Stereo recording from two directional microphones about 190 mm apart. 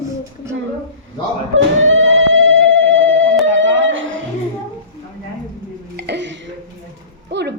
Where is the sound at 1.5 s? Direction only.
90° right.